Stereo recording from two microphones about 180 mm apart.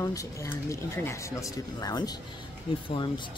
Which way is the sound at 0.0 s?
20° left (ahead or behind).